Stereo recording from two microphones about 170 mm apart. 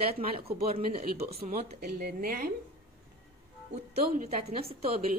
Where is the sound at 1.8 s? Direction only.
65° right (ahead or behind).